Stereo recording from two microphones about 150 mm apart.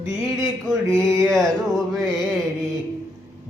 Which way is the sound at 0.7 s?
20° right (ahead or behind).